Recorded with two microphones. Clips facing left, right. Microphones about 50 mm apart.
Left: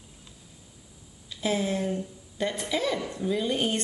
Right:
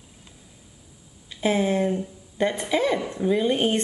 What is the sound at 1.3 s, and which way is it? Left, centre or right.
Speech, right.